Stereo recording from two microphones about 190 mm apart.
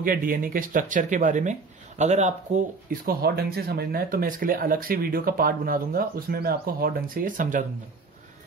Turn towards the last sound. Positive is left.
turn(degrees=-45)  # may be behind; listen again after turning